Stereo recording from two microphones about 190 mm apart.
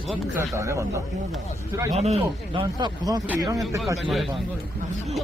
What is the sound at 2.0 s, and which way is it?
Speech, 30° right (ahead or behind).